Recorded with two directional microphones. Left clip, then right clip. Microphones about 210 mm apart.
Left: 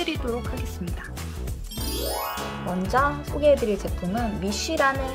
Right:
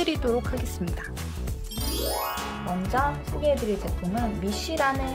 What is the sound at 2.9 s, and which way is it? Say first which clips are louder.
Speech: left 4 dB; 20° left (ahead or behind).